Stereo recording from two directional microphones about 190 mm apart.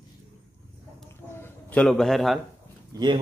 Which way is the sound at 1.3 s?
10° left (ahead or behind).